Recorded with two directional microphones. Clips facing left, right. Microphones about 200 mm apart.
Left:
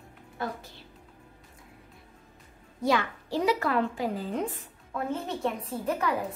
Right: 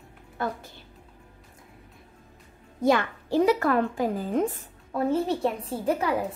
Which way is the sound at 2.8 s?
50° right (ahead or behind).